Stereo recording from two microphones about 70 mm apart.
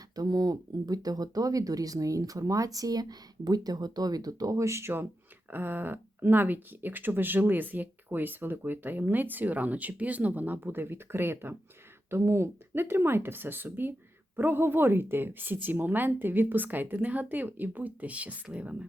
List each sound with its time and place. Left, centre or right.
0.2 s speech: right; by 18.9 s centre